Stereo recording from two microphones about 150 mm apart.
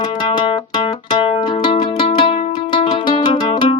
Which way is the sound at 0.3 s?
30° left (ahead or behind).